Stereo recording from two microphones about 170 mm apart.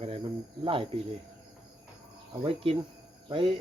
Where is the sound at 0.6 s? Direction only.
30° right (ahead or behind).